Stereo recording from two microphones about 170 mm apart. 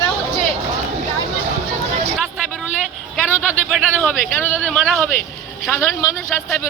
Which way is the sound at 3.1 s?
5° right (ahead or behind).